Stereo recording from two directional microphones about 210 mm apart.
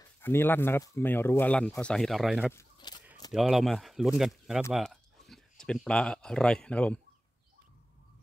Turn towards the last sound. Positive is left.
turn(degrees=5)  # may be behind; listen again after turning